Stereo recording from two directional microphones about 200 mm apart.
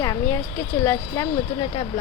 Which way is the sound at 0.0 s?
15° left (ahead or behind).